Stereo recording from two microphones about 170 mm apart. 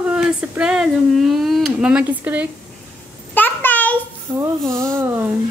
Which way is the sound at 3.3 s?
10° left (ahead or behind).